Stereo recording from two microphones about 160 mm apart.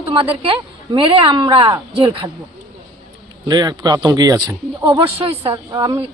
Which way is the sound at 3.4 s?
25° right (ahead or behind).